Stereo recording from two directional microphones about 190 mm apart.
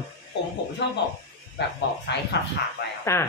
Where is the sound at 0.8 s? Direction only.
65° left (ahead or behind).